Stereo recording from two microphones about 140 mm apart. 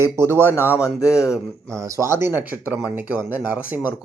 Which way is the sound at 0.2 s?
20° right (ahead or behind).